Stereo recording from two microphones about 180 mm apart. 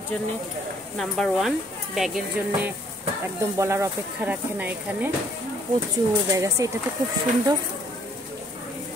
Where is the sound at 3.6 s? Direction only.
15° right (ahead or behind).